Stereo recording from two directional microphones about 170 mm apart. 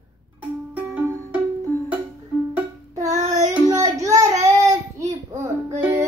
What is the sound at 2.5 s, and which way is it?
Music, 15° right (ahead or behind).